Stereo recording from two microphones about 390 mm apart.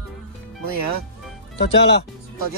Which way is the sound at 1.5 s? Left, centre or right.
Centre.